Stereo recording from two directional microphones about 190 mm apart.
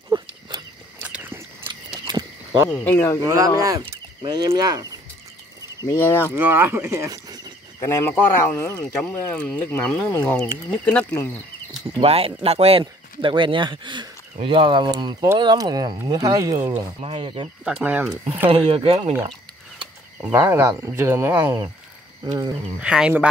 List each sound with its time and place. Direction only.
0.1 s a sound: 20° right (ahead or behind)
1.0 s a sound: 10° right (ahead or behind)
2.8 s speech: 10° left (ahead or behind)
3.2 s speech: 20° right (ahead or behind)
5.8 s speech: 15° left (ahead or behind)
6.3 s speech: 10° right (ahead or behind)
7.8 s speech: 15° left (ahead or behind)
12.0 s speech: 30° right (ahead or behind)
17.0 s speech: 30° right (ahead or behind)
17.6 s speech: 5° right (ahead or behind)
18.5 s speech: 30° right (ahead or behind)
20.2 s speech: 10° right (ahead or behind)
22.8 s speech: 5° right (ahead or behind)